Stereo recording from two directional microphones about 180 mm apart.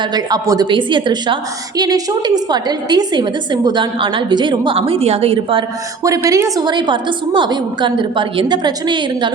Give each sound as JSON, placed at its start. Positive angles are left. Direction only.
{"t": 0.1, "sound": "a woman's voice", "side_deg": -20}
{"t": 6.0, "sound": "a woman's voice", "side_deg": -20}